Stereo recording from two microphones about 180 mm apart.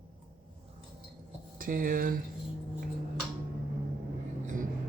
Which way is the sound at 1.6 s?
50° right (ahead or behind).